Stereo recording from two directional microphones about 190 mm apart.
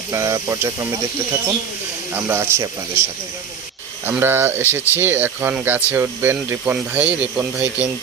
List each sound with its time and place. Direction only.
0.1 s speech: 15° right (ahead or behind)
2.1 s speech: 10° right (ahead or behind)
4.0 s speech: 10° right (ahead or behind)